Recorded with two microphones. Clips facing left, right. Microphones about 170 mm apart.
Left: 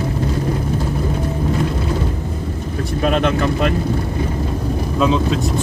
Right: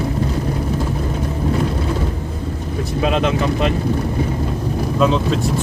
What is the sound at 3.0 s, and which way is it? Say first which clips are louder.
Speech: left 1 dB; 50° left (ahead or behind).